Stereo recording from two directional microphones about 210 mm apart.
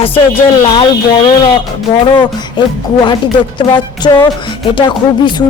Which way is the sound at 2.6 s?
20° left (ahead or behind).